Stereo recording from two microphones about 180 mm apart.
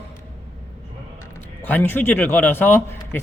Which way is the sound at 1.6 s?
10° left (ahead or behind).